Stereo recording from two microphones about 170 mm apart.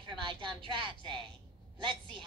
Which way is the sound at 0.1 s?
30° right (ahead or behind).